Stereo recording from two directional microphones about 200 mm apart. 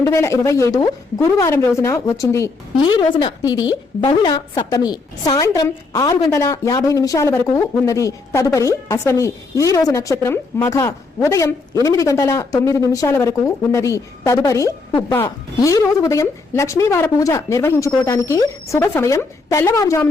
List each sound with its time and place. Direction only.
0.0 s a woman's voice: 15° left (ahead or behind)